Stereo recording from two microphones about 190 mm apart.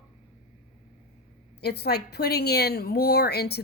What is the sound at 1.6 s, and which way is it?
Speech, 60° left (ahead or behind).